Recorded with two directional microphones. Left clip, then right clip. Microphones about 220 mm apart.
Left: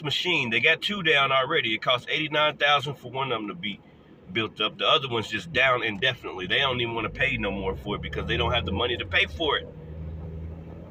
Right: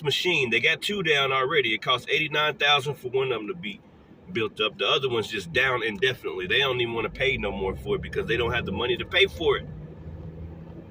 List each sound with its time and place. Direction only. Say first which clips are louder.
0.0 s speech: right 1 dB; 15° left (ahead or behind)